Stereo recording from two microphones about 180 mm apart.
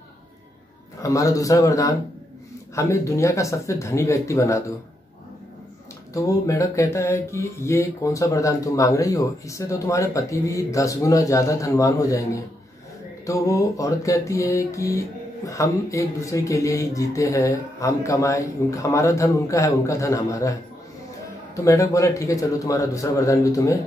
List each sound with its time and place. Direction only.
1.0 s a man's voice: 20° left (ahead or behind)
2.7 s music: 15° left (ahead or behind)
6.1 s music: 15° left (ahead or behind)
13.2 s music: 15° left (ahead or behind)
21.6 s music: 15° left (ahead or behind)